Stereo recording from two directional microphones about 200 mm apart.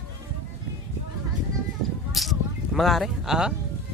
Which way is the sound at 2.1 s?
Centre (ahead or behind).